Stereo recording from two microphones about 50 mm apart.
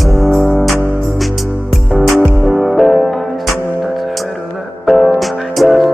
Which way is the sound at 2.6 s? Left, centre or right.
Centre.